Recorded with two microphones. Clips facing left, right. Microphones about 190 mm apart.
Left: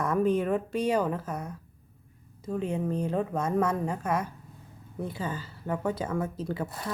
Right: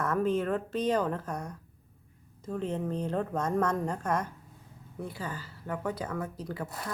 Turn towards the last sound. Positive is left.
turn(degrees=25)  # may be behind; listen again after turning